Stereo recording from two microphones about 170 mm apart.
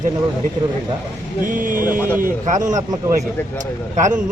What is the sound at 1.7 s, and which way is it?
Speech, 10° right (ahead or behind).